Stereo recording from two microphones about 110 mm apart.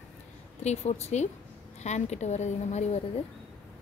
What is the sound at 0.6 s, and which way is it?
A woman's voice, 90° left.